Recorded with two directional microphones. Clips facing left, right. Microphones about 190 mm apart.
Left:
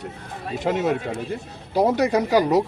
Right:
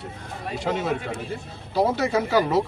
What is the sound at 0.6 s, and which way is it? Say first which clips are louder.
A man's voice: left 4 dB; 20° left (ahead or behind).